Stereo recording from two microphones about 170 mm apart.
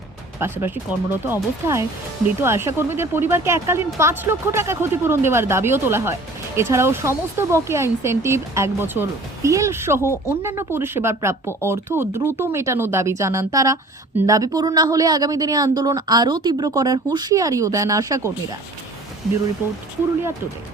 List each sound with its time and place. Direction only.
0.3 s speech: 15° right (ahead or behind)